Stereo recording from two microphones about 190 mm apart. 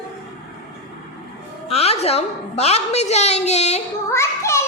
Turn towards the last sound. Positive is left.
turn(degrees=15)  # may be behind; listen again after turning